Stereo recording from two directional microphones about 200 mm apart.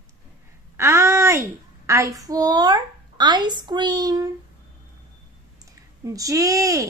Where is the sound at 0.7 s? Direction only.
15° right (ahead or behind).